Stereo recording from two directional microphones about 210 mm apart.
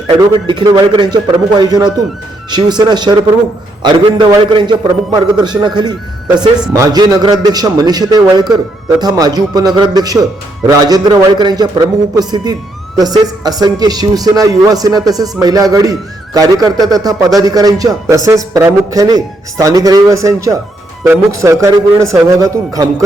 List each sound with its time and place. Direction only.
0.1 s a man's voice: 20° right (ahead or behind)